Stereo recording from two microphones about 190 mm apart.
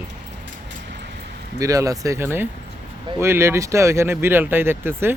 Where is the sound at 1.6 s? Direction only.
15° right (ahead or behind).